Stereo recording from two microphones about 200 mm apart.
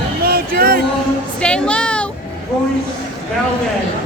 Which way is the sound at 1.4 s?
5° left (ahead or behind).